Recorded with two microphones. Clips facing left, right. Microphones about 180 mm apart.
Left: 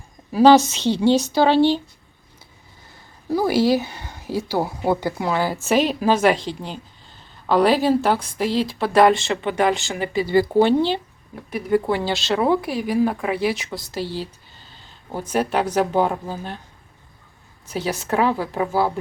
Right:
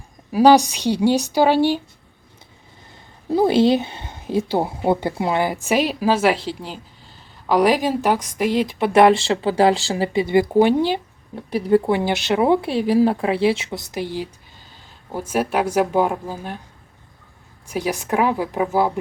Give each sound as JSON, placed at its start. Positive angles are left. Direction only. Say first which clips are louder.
{"t": 0.3, "sound": "a woman's voice", "louder": "even", "side_deg": -10}
{"t": 3.2, "sound": "a woman's voice", "louder": "right 3 dB", "side_deg": -25}
{"t": 11.3, "sound": "a woman's voice", "louder": "right 4 dB", "side_deg": -30}
{"t": 17.7, "sound": "a woman's voice", "louder": "right 1 dB", "side_deg": -10}